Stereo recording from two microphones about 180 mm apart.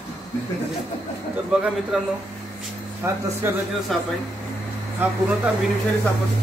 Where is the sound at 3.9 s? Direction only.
Centre (ahead or behind).